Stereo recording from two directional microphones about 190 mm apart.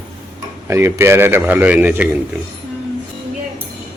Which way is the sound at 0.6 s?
15° right (ahead or behind).